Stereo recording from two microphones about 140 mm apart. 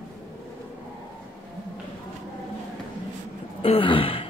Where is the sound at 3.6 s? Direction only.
40° left (ahead or behind).